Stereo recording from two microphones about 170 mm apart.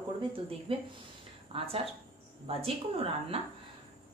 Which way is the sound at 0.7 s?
30° right (ahead or behind).